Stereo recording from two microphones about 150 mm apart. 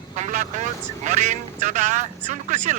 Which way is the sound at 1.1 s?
50° right (ahead or behind).